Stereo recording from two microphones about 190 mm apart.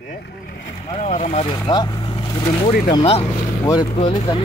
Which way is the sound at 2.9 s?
30° left (ahead or behind).